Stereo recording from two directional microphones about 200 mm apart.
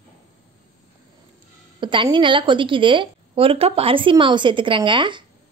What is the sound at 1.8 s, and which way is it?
A woman's voice, 25° right (ahead or behind).